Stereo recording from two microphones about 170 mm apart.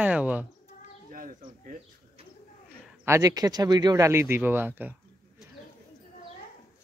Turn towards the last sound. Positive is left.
turn(degrees=-10)  # may be behind; listen again after turning